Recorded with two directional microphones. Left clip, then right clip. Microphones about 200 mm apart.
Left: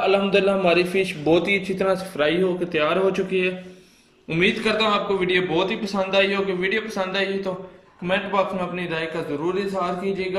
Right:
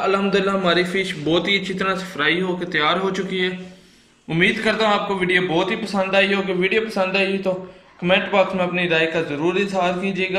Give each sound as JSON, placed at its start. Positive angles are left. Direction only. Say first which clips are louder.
{"t": 0.0, "sound": "a man's voice", "louder": "even", "side_deg": 0}